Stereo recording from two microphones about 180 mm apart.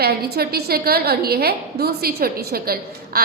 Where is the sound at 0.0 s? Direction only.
60° right (ahead or behind).